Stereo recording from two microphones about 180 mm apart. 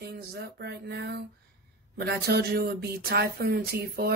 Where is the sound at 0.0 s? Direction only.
60° right (ahead or behind).